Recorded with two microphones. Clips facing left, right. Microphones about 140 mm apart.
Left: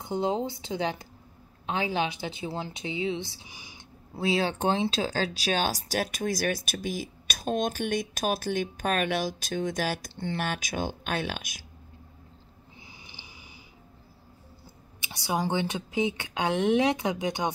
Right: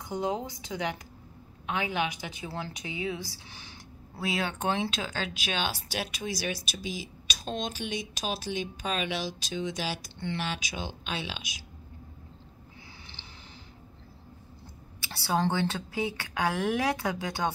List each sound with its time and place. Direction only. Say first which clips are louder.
0.0 s a woman's voice: left 3 dB; 25° left (ahead or behind)
3.4 s speech: even; 10° left (ahead or behind)
4.2 s speech: left 5 dB; 30° left (ahead or behind); by 11.6 s 50° left (ahead or behind)
13.0 s a sound: even; 10° left (ahead or behind)
15.1 s a woman's voice: even; 15° left (ahead or behind)